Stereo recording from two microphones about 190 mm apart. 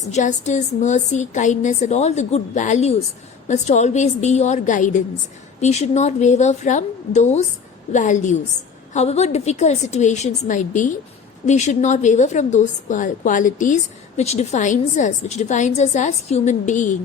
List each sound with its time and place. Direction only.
0.1 s a woman's voice: 40° left (ahead or behind)